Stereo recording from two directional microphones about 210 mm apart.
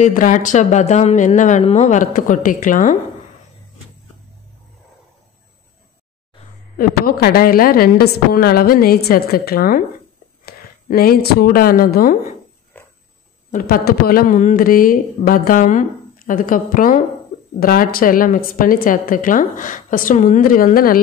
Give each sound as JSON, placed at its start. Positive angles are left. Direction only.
{"t": 0.0, "sound": "speech", "side_deg": 35}
{"t": 6.8, "sound": "a woman's voice", "side_deg": 45}
{"t": 12.7, "sound": "a sound", "side_deg": 10}
{"t": 13.5, "sound": "speech", "side_deg": 45}